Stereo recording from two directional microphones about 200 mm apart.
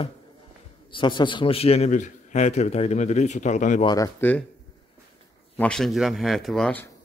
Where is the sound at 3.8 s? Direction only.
15° left (ahead or behind).